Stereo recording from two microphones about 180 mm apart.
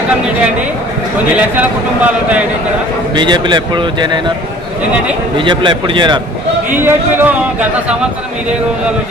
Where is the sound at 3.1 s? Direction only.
25° right (ahead or behind).